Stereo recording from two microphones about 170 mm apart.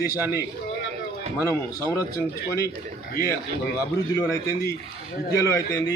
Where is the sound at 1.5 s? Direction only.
20° left (ahead or behind).